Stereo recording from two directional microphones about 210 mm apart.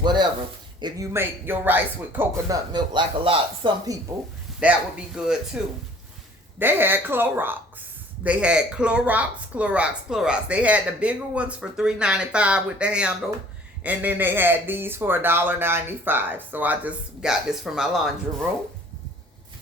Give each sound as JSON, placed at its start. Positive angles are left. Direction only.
{"t": 0.0, "sound": "a sound", "side_deg": -20}
{"t": 0.8, "sound": "speech", "side_deg": -20}
{"t": 5.1, "sound": "a woman's voice", "side_deg": -5}
{"t": 6.6, "sound": "a woman's voice", "side_deg": -10}